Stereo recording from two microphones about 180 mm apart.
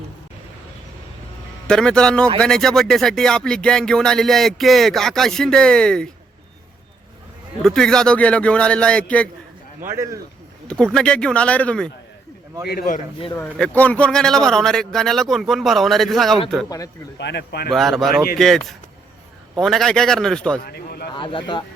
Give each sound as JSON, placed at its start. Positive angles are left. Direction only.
{"t": 1.6, "sound": "speech", "side_deg": 5}
{"t": 7.6, "sound": "speech", "side_deg": 5}
{"t": 9.8, "sound": "speech", "side_deg": -15}
{"t": 10.9, "sound": "speech", "side_deg": 5}
{"t": 12.6, "sound": "speech", "side_deg": 55}
{"t": 13.3, "sound": "speech", "side_deg": 10}
{"t": 16.6, "sound": "speech", "side_deg": 20}
{"t": 17.2, "sound": "speech", "side_deg": 70}
{"t": 17.7, "sound": "speech", "side_deg": 0}
{"t": 20.6, "sound": "speech", "side_deg": 60}
{"t": 21.1, "sound": "speech", "side_deg": 25}